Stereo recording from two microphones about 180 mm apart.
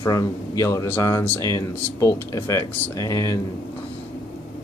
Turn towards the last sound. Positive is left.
turn(degrees=15)  # may be behind; listen again after turning